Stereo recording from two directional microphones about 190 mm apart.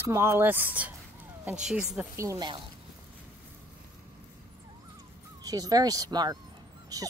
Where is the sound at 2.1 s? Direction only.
15° right (ahead or behind).